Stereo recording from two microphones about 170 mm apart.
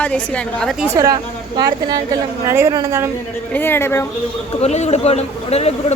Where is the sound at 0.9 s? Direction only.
20° right (ahead or behind).